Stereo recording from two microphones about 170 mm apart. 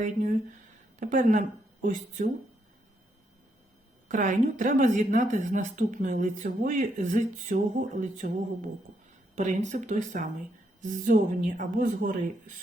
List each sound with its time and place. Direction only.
0.9 s speech: 50° right (ahead or behind)
4.1 s a woman's voice: 50° right (ahead or behind)